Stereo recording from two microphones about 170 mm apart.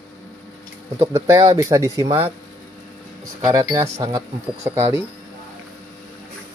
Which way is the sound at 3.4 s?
20° right (ahead or behind).